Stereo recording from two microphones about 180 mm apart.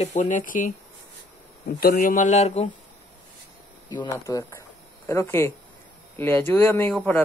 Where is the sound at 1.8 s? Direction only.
50° left (ahead or behind).